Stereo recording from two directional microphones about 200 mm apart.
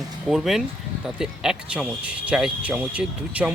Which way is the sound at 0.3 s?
Centre (ahead or behind).